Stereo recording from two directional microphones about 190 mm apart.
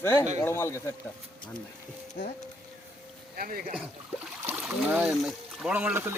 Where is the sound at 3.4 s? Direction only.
50° right (ahead or behind).